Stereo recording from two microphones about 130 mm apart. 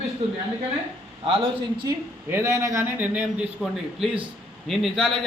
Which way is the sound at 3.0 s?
10° right (ahead or behind).